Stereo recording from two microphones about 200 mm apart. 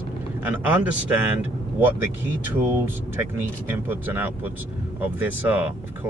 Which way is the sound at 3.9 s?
10° right (ahead or behind).